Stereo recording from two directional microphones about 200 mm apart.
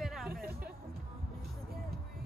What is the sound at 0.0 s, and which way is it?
Music, centre (ahead or behind).